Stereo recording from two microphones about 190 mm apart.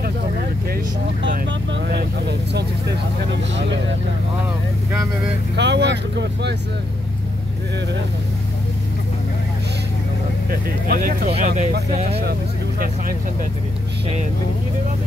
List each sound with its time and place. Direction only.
1.7 s vehicle: 60° right (ahead or behind)
5.6 s speech: 65° right (ahead or behind)
10.5 s speech: 50° right (ahead or behind)
12.2 s speech: 55° right (ahead or behind)